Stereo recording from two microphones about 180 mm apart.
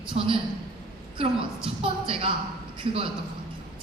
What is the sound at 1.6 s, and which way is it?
Speech, 30° right (ahead or behind).